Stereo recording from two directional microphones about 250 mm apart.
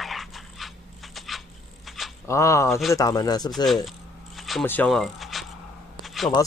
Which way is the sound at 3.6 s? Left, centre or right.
Centre.